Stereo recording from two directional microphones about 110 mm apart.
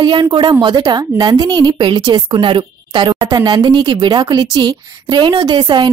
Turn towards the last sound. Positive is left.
turn(degrees=-40)  # may be behind; listen again after turning